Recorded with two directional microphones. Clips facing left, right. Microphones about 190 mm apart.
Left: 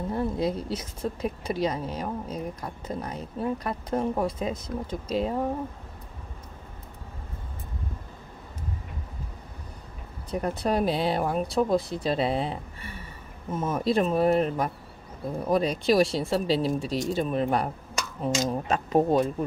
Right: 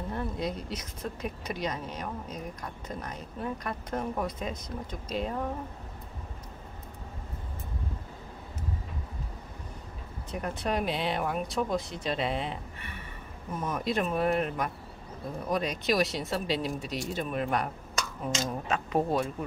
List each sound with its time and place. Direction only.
0.1 s a woman's voice: 30° left (ahead or behind)
10.3 s a woman's voice: 35° left (ahead or behind)
18.7 s a woman's voice: 35° left (ahead or behind)